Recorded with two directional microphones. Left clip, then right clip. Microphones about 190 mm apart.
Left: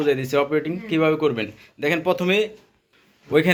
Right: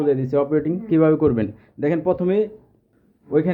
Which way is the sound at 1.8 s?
15° right (ahead or behind).